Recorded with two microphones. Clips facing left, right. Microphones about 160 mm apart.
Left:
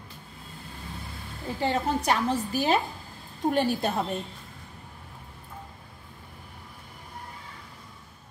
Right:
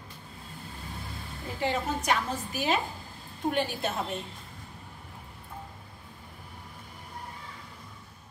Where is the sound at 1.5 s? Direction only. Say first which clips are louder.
Left 3 dB; 35° left (ahead or behind).